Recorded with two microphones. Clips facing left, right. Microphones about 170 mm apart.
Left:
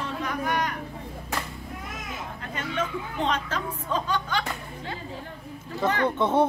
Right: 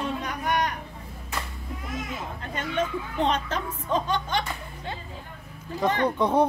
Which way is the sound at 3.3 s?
20° right (ahead or behind).